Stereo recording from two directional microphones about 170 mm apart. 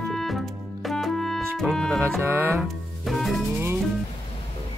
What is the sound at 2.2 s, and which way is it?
Music, 15° right (ahead or behind).